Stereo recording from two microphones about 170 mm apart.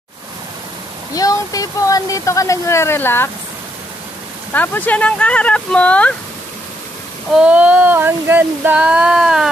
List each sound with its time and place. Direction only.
1.1 s speech: 20° left (ahead or behind)
4.6 s speech: 10° left (ahead or behind)
7.3 s a sound: 10° right (ahead or behind)